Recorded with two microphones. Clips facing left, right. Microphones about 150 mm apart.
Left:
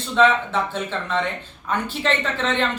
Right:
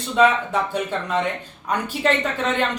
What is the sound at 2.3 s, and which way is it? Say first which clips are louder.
Speech: even; 10° right (ahead or behind).